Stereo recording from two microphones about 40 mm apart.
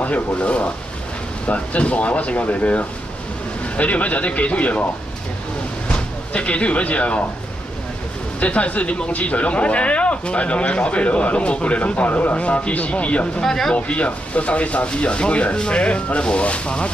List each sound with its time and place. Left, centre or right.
0.0 s speech: left
5.9 s speech: left
8.4 s speech: left
13.4 s speech: centre
13.7 s speech: left